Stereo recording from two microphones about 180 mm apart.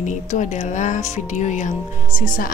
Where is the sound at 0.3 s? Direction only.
40° left (ahead or behind).